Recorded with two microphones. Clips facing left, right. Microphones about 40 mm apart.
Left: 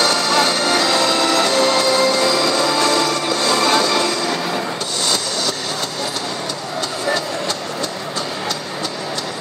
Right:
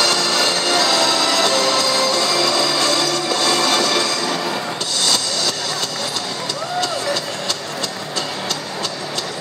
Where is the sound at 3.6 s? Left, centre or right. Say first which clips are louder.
Left 2 dB; left.